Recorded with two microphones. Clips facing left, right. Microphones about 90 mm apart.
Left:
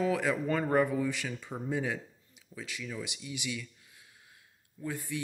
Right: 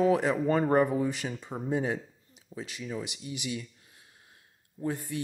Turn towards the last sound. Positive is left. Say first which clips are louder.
# right 4 dB
turn(degrees=-40)  # may be behind; listen again after turning